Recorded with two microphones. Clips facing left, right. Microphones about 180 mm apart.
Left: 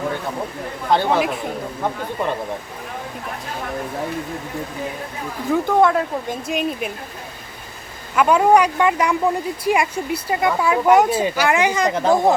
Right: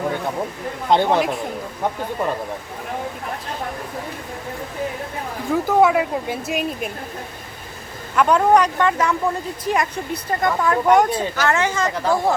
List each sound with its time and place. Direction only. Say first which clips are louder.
0.9 s speech: right 1 dB; 20° right (ahead or behind)
5.5 s speech: even; 5° right (ahead or behind)
8.1 s speech: left 1 dB; 5° left (ahead or behind)